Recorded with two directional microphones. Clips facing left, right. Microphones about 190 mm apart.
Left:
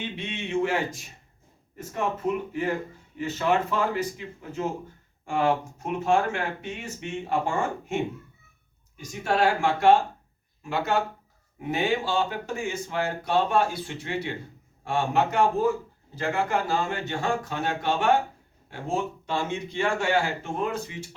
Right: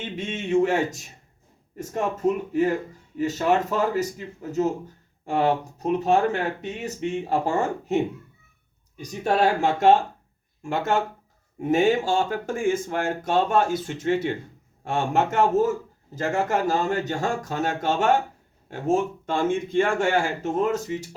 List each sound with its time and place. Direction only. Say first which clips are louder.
0.0 s speech: right 3 dB; 45° right (ahead or behind)
5.2 s speech: right 2 dB; 40° right (ahead or behind)
10.6 s speech: right 2 dB; 50° right (ahead or behind)